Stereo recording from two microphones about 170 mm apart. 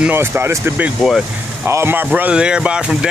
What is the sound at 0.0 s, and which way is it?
Speech, 10° right (ahead or behind).